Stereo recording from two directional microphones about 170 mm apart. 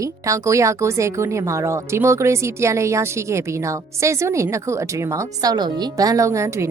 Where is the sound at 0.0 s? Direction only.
20° right (ahead or behind).